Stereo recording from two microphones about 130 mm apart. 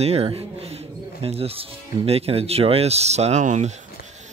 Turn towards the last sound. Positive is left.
turn(degrees=-65)  # may be behind; listen again after turning